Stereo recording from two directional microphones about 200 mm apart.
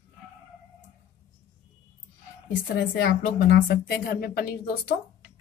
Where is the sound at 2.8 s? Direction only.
55° left (ahead or behind).